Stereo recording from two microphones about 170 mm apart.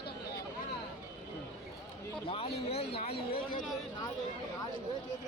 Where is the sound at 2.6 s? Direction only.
35° left (ahead or behind).